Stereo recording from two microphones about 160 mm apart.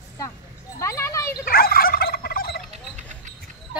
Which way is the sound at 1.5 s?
70° left (ahead or behind).